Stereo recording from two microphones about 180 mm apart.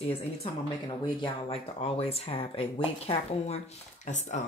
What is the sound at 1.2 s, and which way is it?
Speech, 30° left (ahead or behind).